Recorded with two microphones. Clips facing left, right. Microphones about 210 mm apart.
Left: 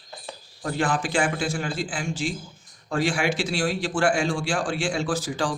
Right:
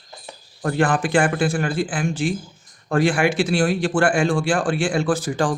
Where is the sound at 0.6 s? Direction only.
60° right (ahead or behind).